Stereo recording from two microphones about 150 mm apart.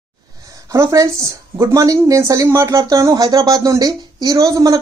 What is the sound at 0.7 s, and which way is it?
Speech, 20° right (ahead or behind).